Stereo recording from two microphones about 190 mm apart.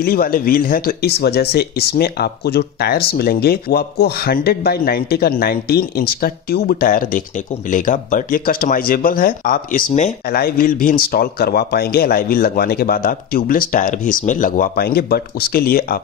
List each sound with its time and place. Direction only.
0.0 s speech: 50° left (ahead or behind)